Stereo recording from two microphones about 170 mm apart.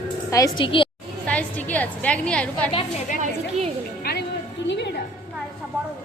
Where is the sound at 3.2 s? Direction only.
35° right (ahead or behind).